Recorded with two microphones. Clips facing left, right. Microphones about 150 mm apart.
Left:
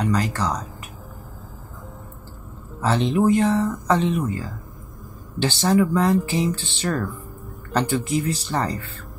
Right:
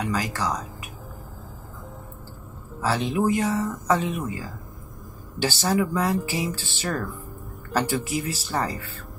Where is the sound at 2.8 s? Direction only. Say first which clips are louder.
Left 4 dB; 5° right (ahead or behind).